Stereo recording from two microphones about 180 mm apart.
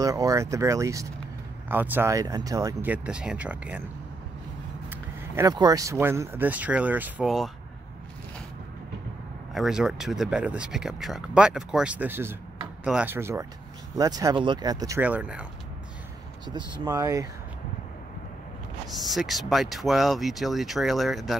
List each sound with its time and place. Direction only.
0.0 s speech: 20° right (ahead or behind)
5.3 s speech: 20° right (ahead or behind); by 7.5 s centre (ahead or behind)
9.5 s speech: centre (ahead or behind); by 15.0 s 20° right (ahead or behind)
15.0 s speech: 10° right (ahead or behind)
16.4 s speech: 25° right (ahead or behind)
18.9 s speech: centre (ahead or behind)